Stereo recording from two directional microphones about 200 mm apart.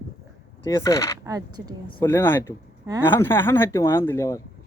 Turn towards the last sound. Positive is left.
turn(degrees=15)  # may be behind; listen again after turning